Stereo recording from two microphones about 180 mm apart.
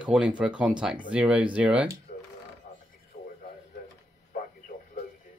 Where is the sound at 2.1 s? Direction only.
50° left (ahead or behind).